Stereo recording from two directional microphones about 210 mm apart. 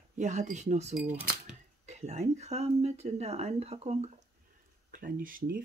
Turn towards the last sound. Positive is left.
turn(degrees=-40)  # may be behind; listen again after turning